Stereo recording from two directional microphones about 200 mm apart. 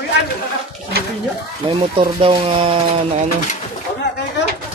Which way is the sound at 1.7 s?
25° right (ahead or behind).